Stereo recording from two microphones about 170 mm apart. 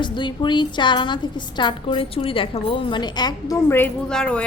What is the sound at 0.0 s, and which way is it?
A woman's voice, 25° left (ahead or behind).